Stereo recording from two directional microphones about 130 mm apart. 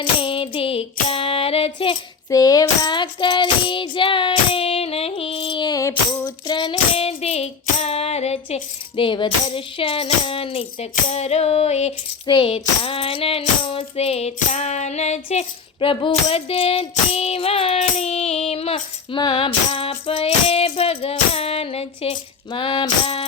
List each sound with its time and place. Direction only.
0.0 s music: 40° left (ahead or behind)
2.3 s child singing: 30° left (ahead or behind)
6.9 s music: 50° left (ahead or behind)
9.0 s child singing: 40° left (ahead or behind)
12.2 s child singing: 40° left (ahead or behind)